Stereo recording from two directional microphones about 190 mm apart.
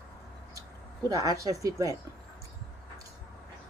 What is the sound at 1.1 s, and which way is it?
Speech, 20° right (ahead or behind).